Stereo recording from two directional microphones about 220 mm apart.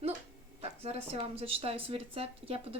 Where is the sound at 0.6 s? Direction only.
30° right (ahead or behind).